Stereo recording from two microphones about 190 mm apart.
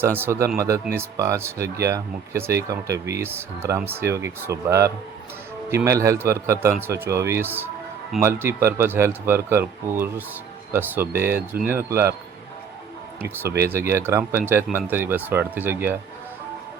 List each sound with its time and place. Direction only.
0.0 s speech: 10° right (ahead or behind)
13.6 s speech: 15° right (ahead or behind)